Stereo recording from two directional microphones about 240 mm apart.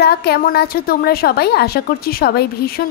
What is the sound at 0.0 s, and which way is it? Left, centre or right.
A woman's voice, left.